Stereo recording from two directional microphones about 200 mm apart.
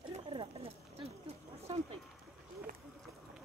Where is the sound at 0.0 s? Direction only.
25° right (ahead or behind).